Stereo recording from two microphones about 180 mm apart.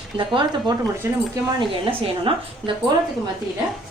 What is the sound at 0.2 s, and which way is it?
Speech, 25° right (ahead or behind).